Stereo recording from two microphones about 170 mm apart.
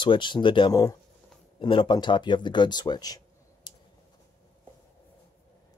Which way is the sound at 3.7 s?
25° left (ahead or behind).